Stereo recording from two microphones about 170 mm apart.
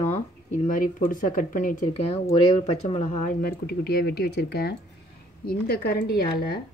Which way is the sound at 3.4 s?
70° left (ahead or behind).